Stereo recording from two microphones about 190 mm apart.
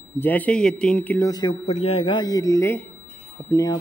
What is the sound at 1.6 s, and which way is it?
A man's voice, 35° left (ahead or behind).